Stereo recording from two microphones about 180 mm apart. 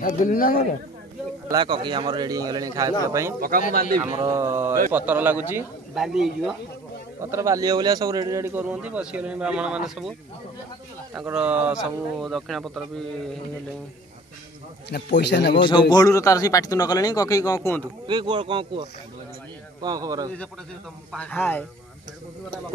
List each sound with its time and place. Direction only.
0.0 s a man's voice: 45° left (ahead or behind)
1.5 s a man's voice: 25° right (ahead or behind)
3.3 s a man's voice: 50° right (ahead or behind)
4.2 s a man's voice: 15° right (ahead or behind)
7.2 s a man's voice: 15° right (ahead or behind)
11.1 s speech: 5° right (ahead or behind)
14.9 s a man's voice: 65° left (ahead or behind)
15.6 s a man's voice: 25° left (ahead or behind)
18.0 s a man's voice: 25° right (ahead or behind)
21.1 s speech: 10° left (ahead or behind)